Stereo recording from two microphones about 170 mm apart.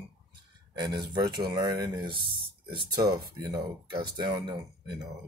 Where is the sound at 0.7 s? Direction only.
25° right (ahead or behind).